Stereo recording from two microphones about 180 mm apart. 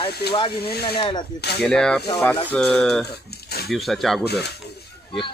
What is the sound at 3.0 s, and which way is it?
Speech, 60° left (ahead or behind).